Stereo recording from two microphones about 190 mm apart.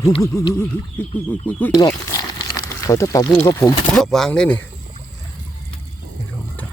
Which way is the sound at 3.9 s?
5° left (ahead or behind).